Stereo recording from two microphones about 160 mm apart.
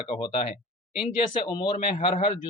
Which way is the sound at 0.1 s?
35° left (ahead or behind).